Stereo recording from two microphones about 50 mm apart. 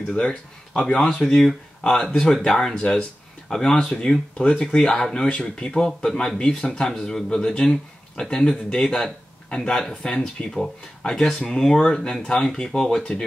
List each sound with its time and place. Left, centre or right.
0.1 s a man's voice: centre
3.4 s a man's voice: centre